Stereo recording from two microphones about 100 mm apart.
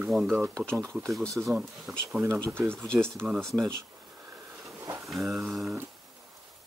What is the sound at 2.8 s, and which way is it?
Speech, 10° left (ahead or behind).